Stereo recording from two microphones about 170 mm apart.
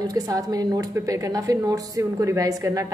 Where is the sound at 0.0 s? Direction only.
20° right (ahead or behind).